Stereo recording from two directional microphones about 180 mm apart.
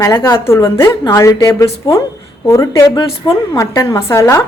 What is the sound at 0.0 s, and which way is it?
A woman's voice, 15° left (ahead or behind).